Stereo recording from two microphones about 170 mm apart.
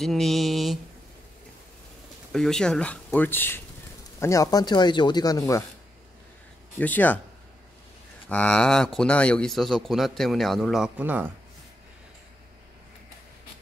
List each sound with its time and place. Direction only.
0.0 s speech: centre (ahead or behind)
2.3 s speech: 5° left (ahead or behind); by 5.4 s 25° left (ahead or behind)
6.8 s speech: 10° left (ahead or behind)
8.3 s speech: 5° left (ahead or behind); by 11.3 s 10° right (ahead or behind)